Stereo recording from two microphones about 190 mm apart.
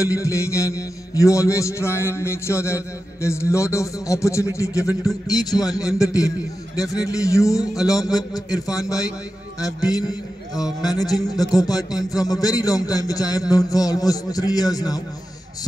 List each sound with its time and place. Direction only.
0.2 s a man's voice: 15° left (ahead or behind)